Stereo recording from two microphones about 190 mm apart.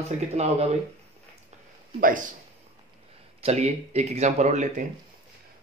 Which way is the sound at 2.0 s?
45° right (ahead or behind).